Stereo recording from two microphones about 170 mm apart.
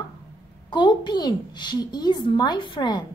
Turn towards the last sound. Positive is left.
turn(degrees=25)  # may be behind; listen again after turning